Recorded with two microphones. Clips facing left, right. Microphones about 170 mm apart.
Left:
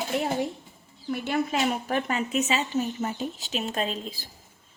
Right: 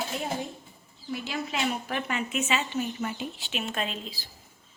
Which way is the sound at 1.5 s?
40° left (ahead or behind).